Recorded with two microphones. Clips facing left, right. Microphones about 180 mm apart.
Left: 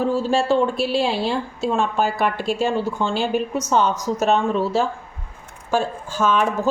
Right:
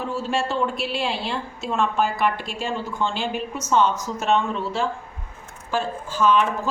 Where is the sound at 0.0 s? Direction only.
35° left (ahead or behind).